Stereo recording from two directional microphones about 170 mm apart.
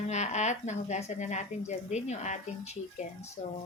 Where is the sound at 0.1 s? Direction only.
45° left (ahead or behind).